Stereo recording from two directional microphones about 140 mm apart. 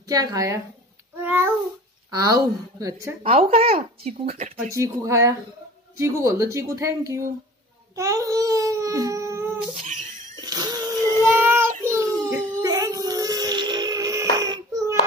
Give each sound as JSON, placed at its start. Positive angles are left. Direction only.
{"t": 0.1, "sound": "a woman's voice", "side_deg": -25}
{"t": 1.2, "sound": "babbling", "side_deg": -15}
{"t": 2.0, "sound": "a woman's voice", "side_deg": -25}
{"t": 3.3, "sound": "speech", "side_deg": -50}
{"t": 4.7, "sound": "a woman's voice", "side_deg": -20}
{"t": 7.9, "sound": "babbling", "side_deg": -25}
{"t": 10.4, "sound": "child singing", "side_deg": -30}